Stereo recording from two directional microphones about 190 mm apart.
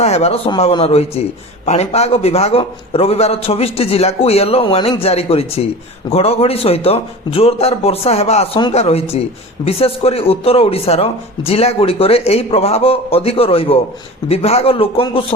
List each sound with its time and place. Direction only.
0.0 s speech: 35° left (ahead or behind)